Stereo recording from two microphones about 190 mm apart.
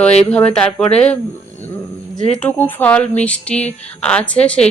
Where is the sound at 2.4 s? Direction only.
10° left (ahead or behind).